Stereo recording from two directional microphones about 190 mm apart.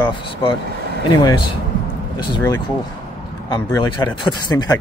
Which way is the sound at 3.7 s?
25° left (ahead or behind).